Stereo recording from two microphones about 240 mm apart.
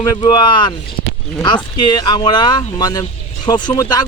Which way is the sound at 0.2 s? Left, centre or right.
Centre.